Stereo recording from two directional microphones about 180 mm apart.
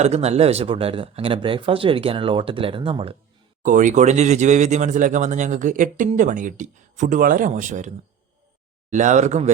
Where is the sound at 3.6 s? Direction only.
45° right (ahead or behind).